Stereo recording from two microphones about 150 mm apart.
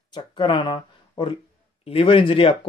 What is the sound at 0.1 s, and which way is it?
Speech, 30° left (ahead or behind).